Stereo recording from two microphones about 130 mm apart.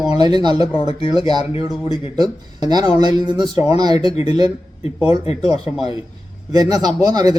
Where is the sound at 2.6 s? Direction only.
30° right (ahead or behind).